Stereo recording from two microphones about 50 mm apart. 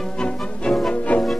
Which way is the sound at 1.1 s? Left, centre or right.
Left.